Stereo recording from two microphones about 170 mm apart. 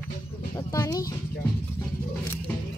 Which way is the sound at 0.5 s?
20° left (ahead or behind).